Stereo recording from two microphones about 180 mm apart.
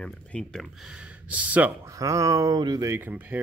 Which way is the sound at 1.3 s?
10° right (ahead or behind).